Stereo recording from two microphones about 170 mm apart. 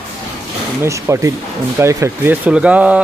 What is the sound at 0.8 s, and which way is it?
Speech, 15° right (ahead or behind).